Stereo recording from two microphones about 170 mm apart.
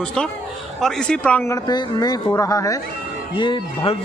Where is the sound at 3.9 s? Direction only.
35° left (ahead or behind).